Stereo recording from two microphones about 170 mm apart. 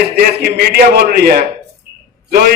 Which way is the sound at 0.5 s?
70° right (ahead or behind).